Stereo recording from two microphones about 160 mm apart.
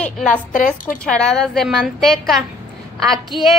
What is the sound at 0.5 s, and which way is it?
Speech, 55° left (ahead or behind).